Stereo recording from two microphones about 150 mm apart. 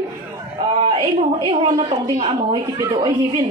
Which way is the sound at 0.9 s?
30° right (ahead or behind).